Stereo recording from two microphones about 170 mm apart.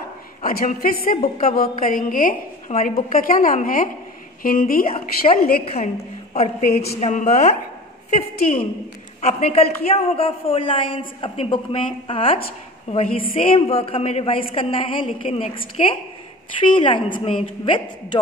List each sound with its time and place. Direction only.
0.4 s a woman's voice: 55° left (ahead or behind)
4.9 s a man's voice: 35° left (ahead or behind)
9.2 s a man's voice: 35° left (ahead or behind)